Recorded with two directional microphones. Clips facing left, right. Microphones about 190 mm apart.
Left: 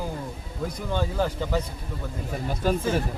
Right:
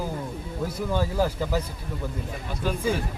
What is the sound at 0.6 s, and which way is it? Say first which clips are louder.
Speech: right 1 dB; 5° right (ahead or behind).